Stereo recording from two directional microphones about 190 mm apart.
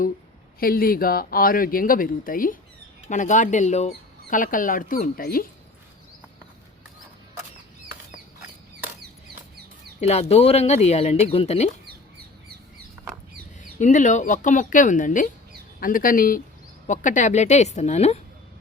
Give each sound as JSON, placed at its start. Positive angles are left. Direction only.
{"t": 0.6, "sound": "speech", "side_deg": 50}
{"t": 10.0, "sound": "speech", "side_deg": 35}
{"t": 13.6, "sound": "speech", "side_deg": 40}